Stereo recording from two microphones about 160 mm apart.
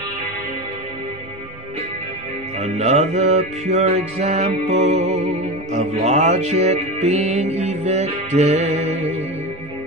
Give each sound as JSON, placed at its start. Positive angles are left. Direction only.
{"t": 2.6, "sound": "music", "side_deg": -40}